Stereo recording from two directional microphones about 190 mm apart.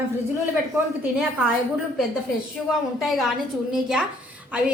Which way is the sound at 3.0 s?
Centre (ahead or behind).